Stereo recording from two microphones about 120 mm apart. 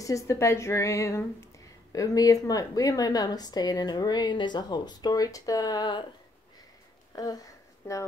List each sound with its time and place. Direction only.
0.0 s speech: 25° left (ahead or behind)
7.1 s a sound: 35° left (ahead or behind)
7.8 s speech: 25° left (ahead or behind)